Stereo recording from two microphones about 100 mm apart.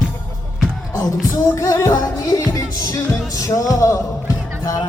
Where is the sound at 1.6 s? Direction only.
35° left (ahead or behind).